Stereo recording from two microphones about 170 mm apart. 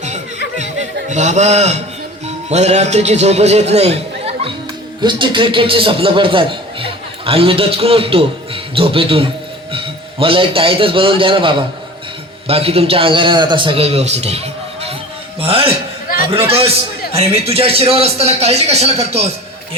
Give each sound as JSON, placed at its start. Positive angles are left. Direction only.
{"t": 0.5, "sound": "chuckle", "side_deg": -45}
{"t": 2.2, "sound": "a man's voice", "side_deg": -40}